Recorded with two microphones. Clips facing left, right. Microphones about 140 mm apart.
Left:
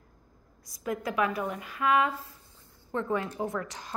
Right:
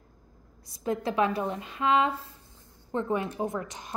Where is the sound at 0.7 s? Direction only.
25° right (ahead or behind).